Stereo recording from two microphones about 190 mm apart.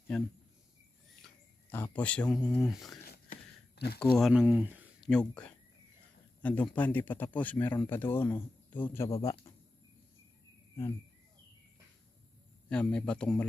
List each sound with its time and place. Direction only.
1.7 s speech: 10° left (ahead or behind)
3.8 s speech: 55° left (ahead or behind)
4.2 s speech: 5° right (ahead or behind)
5.0 s a man's voice: 5° left (ahead or behind)
12.6 s speech: 5° left (ahead or behind)